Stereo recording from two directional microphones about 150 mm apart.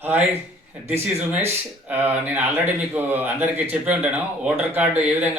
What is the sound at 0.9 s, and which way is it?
A man's voice, 15° right (ahead or behind).